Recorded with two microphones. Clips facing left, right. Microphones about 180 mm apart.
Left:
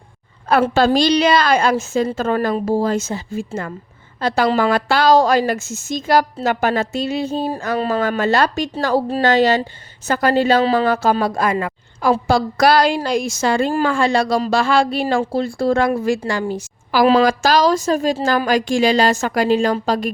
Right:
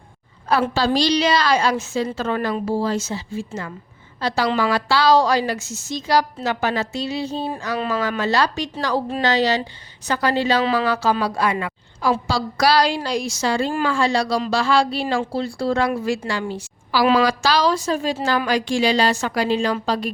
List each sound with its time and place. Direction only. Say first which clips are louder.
0.4 s a woman's voice: left 5 dB; 55° left (ahead or behind); by 9.2 s 35° left (ahead or behind)
9.2 s a woman's voice: left 4 dB; 50° left (ahead or behind)
10.6 s speech: left 4 dB; 35° left (ahead or behind)
10.8 s a woman's voice: left 3 dB; 50° left (ahead or behind)